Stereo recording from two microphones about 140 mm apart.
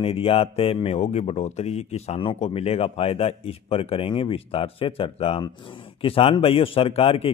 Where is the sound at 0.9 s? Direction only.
55° left (ahead or behind).